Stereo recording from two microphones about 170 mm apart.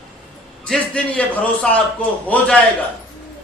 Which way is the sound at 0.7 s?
5° left (ahead or behind).